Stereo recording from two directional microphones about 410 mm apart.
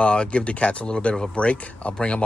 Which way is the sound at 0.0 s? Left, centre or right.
Centre.